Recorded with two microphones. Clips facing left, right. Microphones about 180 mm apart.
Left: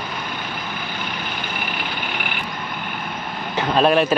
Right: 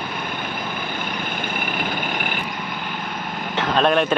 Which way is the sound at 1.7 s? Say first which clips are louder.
Right 3 dB; 50° right (ahead or behind).